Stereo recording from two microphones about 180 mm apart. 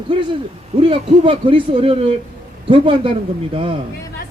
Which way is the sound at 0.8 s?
30° right (ahead or behind).